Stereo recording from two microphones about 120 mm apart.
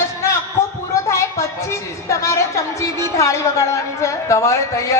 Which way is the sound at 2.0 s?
25° left (ahead or behind).